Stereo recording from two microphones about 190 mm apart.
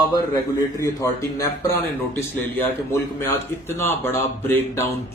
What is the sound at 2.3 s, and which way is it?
Speech, 10° left (ahead or behind).